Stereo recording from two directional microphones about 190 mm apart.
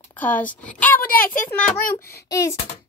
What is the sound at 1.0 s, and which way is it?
Speech, 50° left (ahead or behind).